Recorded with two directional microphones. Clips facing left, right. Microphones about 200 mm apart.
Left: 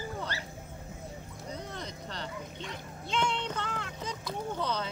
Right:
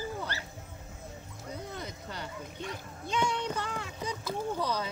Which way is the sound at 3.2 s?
10° right (ahead or behind).